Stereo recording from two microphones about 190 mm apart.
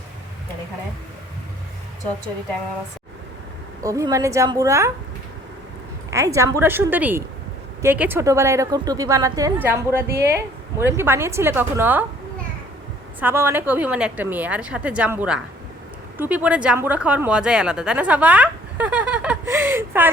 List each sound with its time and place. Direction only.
3.8 s a woman's voice: 15° right (ahead or behind)
6.1 s a woman's voice: 15° right (ahead or behind)
13.1 s a woman's voice: 10° right (ahead or behind)